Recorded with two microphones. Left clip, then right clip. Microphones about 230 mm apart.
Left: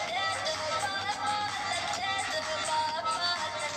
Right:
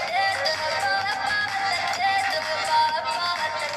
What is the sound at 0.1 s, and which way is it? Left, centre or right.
Music, right.